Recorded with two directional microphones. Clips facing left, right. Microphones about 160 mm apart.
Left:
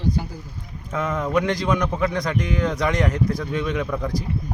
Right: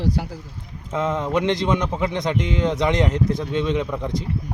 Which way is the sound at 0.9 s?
25° right (ahead or behind).